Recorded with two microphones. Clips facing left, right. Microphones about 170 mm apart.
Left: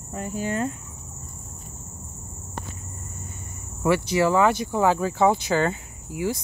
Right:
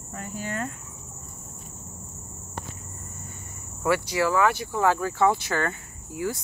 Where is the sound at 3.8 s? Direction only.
20° left (ahead or behind).